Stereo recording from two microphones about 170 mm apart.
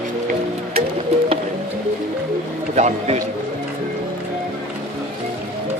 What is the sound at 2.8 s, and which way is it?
Speech, 45° right (ahead or behind).